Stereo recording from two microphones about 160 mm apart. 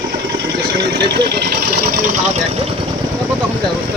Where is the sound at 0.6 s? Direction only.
90° right; by 2.4 s 55° right (ahead or behind).